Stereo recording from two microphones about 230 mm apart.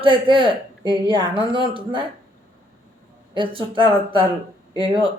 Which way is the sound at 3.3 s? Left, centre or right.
Right.